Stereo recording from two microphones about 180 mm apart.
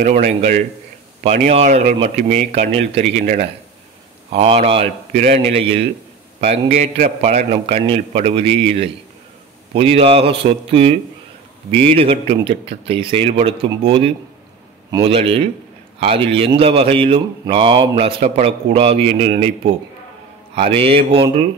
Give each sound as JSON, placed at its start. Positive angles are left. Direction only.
{"t": 0.0, "sound": "speech", "side_deg": -45}